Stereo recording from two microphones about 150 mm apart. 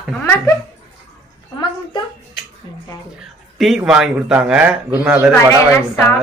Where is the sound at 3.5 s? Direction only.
Centre (ahead or behind).